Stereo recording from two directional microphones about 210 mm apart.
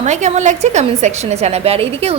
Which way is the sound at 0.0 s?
35° right (ahead or behind).